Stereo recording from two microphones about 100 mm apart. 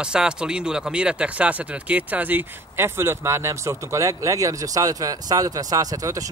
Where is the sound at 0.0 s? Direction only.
10° right (ahead or behind).